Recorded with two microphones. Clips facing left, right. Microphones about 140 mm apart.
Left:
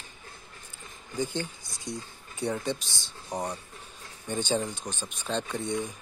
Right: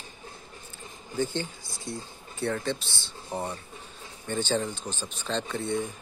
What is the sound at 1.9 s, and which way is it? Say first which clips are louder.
A man's voice: even; 20° left (ahead or behind).